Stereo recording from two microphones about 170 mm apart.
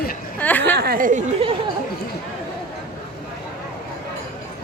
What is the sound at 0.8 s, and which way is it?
Speech, 60° right (ahead or behind).